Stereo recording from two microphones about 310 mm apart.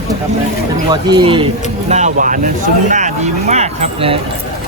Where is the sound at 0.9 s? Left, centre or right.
Centre.